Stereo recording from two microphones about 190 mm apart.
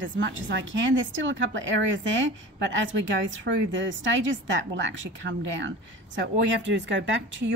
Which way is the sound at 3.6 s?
75° right (ahead or behind).